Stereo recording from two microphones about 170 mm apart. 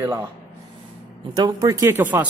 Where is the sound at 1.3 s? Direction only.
25° right (ahead or behind).